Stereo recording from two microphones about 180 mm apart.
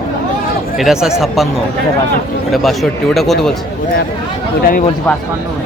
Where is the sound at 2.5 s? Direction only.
Centre (ahead or behind).